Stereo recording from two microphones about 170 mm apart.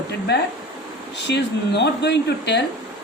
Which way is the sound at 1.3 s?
90° left.